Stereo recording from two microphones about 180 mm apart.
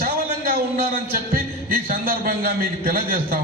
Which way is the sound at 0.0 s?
55° right (ahead or behind).